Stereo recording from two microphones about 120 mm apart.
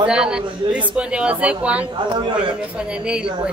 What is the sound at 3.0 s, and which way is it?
Speech, 10° right (ahead or behind).